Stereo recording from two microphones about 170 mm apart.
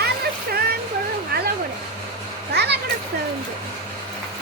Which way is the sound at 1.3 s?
65° right (ahead or behind).